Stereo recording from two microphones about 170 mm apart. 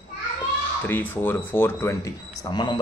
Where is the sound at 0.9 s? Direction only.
10° left (ahead or behind).